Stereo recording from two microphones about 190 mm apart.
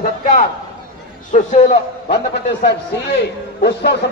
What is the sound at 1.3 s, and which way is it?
Speech, 40° left (ahead or behind).